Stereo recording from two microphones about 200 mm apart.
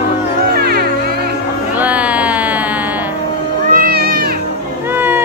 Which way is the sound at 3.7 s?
50° right (ahead or behind).